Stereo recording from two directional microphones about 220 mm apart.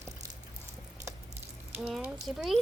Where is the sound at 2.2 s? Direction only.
Centre (ahead or behind).